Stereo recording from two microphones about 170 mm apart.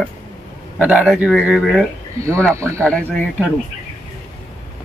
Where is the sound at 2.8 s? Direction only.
5° left (ahead or behind).